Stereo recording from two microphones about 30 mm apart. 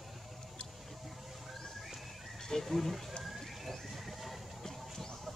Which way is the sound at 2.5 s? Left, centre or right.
Centre.